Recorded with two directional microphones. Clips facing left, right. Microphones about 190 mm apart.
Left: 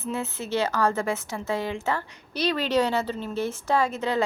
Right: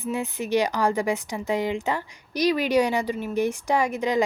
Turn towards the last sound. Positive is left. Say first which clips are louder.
# right 2 dB
turn(degrees=-15)  # may be behind; listen again after turning